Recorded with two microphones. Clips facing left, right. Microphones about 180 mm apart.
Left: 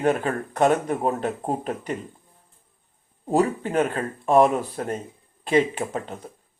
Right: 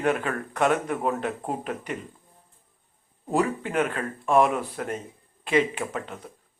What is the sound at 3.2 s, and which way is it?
Speech, 35° left (ahead or behind).